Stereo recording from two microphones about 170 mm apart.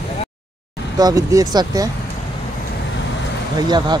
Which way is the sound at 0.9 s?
20° right (ahead or behind).